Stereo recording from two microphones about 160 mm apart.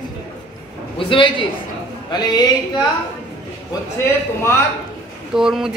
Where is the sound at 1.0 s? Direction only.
30° left (ahead or behind).